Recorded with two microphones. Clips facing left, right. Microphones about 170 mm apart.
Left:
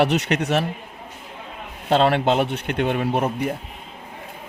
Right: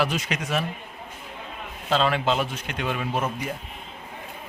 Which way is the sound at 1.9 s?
60° left (ahead or behind).